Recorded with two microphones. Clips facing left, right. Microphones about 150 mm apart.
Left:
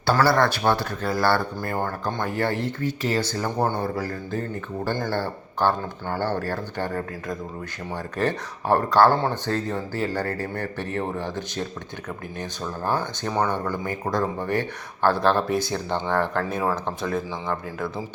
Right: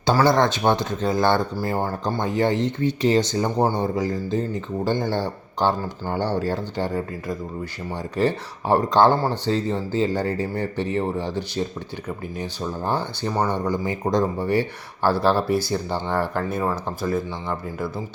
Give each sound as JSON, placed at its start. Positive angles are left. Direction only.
{"t": 0.0, "sound": "speech", "side_deg": -20}